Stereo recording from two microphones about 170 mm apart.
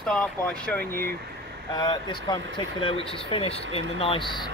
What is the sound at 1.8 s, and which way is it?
Speech, 25° left (ahead or behind).